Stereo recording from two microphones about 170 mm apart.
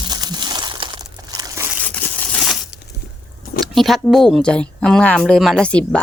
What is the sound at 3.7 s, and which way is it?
Speech, centre (ahead or behind).